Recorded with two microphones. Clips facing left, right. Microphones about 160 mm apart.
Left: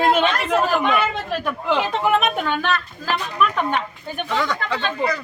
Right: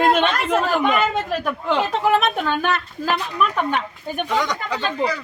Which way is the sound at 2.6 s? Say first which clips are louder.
Right 1 dB; 10° right (ahead or behind).